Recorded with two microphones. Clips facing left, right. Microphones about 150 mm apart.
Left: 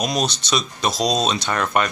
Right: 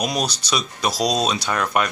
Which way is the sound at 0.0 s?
10° right (ahead or behind).